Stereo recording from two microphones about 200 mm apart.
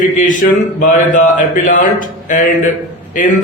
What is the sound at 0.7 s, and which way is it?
Speech, 40° left (ahead or behind).